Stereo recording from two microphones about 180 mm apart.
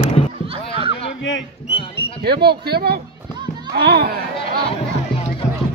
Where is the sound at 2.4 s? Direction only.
60° right (ahead or behind).